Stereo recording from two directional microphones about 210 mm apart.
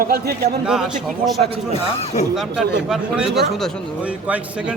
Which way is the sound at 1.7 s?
30° left (ahead or behind).